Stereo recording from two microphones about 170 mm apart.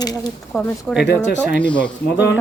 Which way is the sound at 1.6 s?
5° left (ahead or behind).